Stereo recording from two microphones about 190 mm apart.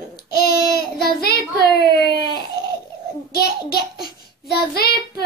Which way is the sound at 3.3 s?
55° left (ahead or behind).